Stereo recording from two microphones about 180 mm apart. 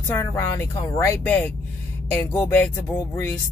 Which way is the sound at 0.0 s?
15° left (ahead or behind).